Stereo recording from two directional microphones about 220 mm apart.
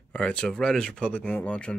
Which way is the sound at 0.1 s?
5° left (ahead or behind).